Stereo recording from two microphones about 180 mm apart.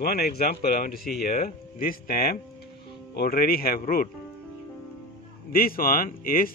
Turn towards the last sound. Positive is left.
turn(degrees=50)  # may be behind; listen again after turning